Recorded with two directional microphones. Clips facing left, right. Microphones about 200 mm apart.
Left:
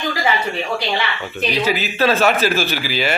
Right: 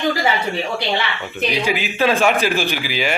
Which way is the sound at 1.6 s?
15° right (ahead or behind).